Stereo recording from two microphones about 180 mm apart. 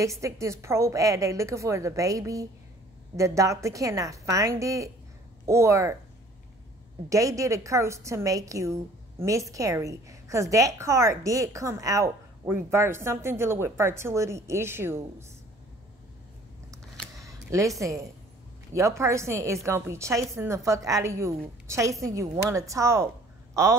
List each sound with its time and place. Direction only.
0.0 s a woman's voice: 15° right (ahead or behind)
7.1 s a woman's voice: 20° right (ahead or behind)
16.7 s a sound: 15° right (ahead or behind)
18.7 s a woman's voice: 15° right (ahead or behind)